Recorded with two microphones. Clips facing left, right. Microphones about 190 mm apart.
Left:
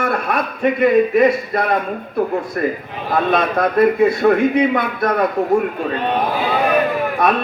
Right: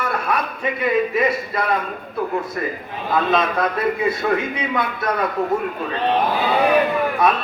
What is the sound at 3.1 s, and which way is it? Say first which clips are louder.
A man's voice: left 2 dB; 60° left (ahead or behind).